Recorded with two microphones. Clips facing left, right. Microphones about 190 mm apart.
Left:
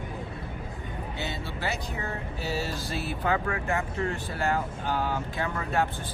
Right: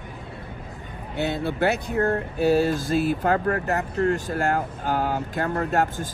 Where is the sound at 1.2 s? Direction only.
60° right (ahead or behind).